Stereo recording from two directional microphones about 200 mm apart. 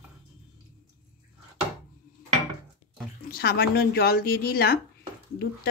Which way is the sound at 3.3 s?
50° left (ahead or behind).